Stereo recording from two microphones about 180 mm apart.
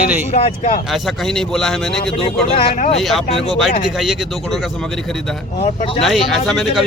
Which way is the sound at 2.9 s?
Centre (ahead or behind).